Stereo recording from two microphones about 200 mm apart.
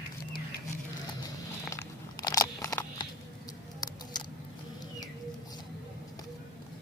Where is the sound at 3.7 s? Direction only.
20° left (ahead or behind).